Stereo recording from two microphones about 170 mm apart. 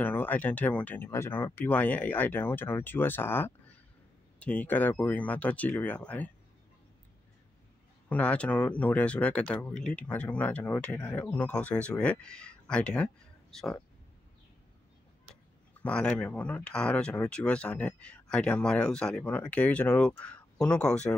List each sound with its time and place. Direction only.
0.0 s speech: 10° left (ahead or behind)
8.1 s speech: 5° left (ahead or behind)
15.8 s speech: 5° left (ahead or behind)